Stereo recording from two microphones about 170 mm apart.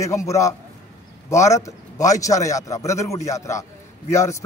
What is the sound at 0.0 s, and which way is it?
A man's voice, 20° left (ahead or behind).